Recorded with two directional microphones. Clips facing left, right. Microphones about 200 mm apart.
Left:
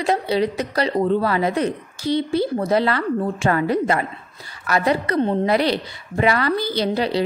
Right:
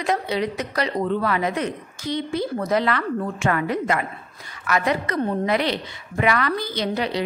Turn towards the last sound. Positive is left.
turn(degrees=30)  # may be behind; listen again after turning